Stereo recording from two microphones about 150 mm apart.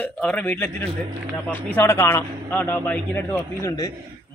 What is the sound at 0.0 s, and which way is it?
A man's voice, 10° left (ahead or behind).